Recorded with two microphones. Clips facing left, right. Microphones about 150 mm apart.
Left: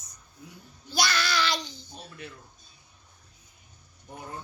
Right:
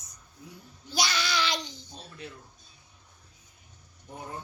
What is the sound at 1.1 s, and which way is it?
Child singing, 15° right (ahead or behind).